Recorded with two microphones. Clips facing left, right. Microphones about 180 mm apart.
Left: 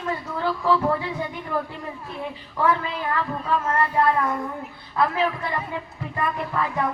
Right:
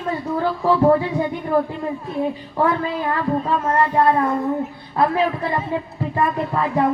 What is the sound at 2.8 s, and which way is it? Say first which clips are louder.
A man's voice: right 4 dB; 30° right (ahead or behind).